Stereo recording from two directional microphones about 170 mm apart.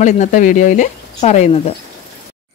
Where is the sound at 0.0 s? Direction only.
45° left (ahead or behind).